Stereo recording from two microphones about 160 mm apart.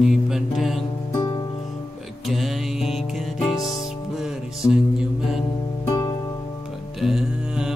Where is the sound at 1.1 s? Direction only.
25° left (ahead or behind).